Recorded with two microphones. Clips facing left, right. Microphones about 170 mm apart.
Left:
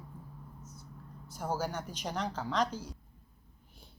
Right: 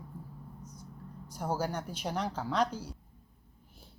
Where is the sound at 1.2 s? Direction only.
10° right (ahead or behind).